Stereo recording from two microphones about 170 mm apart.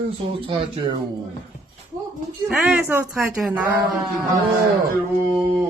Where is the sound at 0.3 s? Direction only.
30° right (ahead or behind).